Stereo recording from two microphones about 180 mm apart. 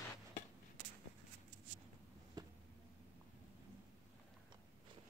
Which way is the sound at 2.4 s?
20° right (ahead or behind).